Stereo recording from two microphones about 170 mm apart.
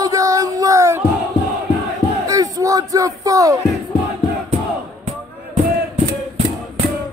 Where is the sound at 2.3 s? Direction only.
20° right (ahead or behind).